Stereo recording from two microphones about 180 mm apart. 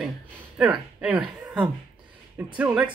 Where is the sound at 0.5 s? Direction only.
5° right (ahead or behind).